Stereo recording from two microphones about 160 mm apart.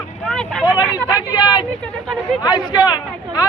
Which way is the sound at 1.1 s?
25° left (ahead or behind).